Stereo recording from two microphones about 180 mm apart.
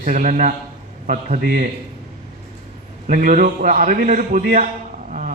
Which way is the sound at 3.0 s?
45° right (ahead or behind).